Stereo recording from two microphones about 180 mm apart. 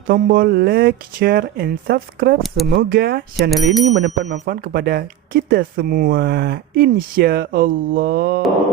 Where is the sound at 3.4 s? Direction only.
Centre (ahead or behind).